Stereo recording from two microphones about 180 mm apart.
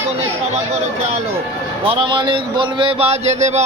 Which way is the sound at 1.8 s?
30° right (ahead or behind).